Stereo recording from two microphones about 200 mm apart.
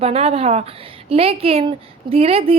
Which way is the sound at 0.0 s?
30° right (ahead or behind).